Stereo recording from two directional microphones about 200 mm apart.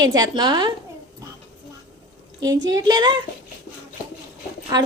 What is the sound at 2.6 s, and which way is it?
Speech, 20° right (ahead or behind).